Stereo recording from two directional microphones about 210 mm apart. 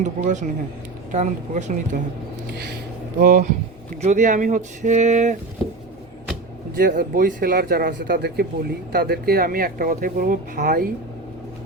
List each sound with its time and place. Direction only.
0.0 s speech: 35° right (ahead or behind)
3.2 s speech: 40° right (ahead or behind)
6.7 s speech: 45° right (ahead or behind)